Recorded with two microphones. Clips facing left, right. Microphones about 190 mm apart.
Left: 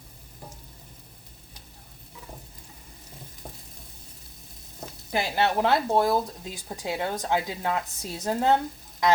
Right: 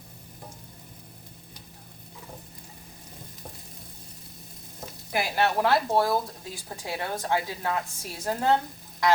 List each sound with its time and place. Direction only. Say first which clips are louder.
5.1 s speech: left 1 dB; 20° left (ahead or behind)